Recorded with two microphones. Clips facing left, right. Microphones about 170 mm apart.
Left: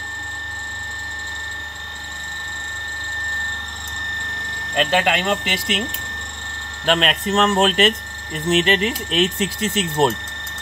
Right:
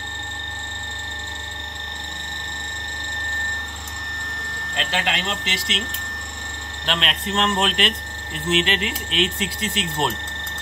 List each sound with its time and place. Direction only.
4.7 s speech: 55° left (ahead or behind)
6.9 s speech: 50° left (ahead or behind)